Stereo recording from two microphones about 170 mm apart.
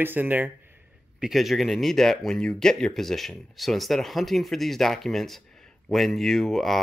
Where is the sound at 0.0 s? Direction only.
10° right (ahead or behind).